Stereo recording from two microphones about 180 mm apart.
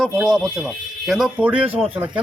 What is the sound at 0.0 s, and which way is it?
A man's voice, centre (ahead or behind).